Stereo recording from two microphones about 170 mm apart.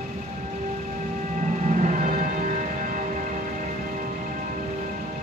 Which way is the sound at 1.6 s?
45° right (ahead or behind).